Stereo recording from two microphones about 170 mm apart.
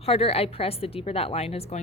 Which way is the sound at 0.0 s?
35° left (ahead or behind).